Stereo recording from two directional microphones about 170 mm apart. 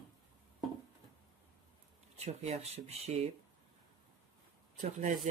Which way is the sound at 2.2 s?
40° right (ahead or behind).